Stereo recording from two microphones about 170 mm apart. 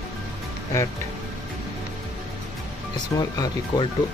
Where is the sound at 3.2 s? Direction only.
25° left (ahead or behind).